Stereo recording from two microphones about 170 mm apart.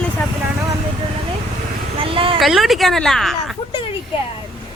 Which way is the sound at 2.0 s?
30° right (ahead or behind).